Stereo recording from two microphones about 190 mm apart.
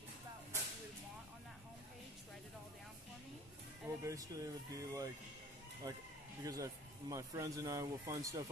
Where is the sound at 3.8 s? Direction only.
15° right (ahead or behind).